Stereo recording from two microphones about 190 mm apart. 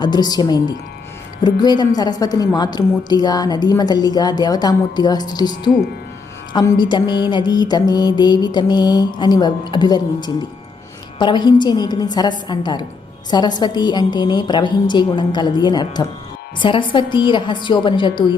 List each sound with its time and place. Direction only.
0.0 s music: 20° left (ahead or behind)